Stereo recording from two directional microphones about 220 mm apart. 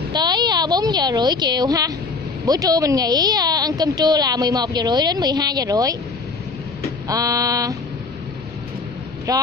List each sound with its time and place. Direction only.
0.1 s a sound: 20° right (ahead or behind)
2.4 s speech: 15° right (ahead or behind)
7.1 s speech: 15° right (ahead or behind)
9.3 s speech: 15° right (ahead or behind)